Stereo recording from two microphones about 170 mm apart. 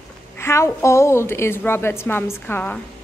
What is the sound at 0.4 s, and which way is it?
A woman's voice, 15° left (ahead or behind).